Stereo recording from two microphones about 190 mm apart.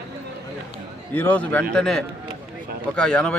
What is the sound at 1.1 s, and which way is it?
A man's voice, 10° left (ahead or behind).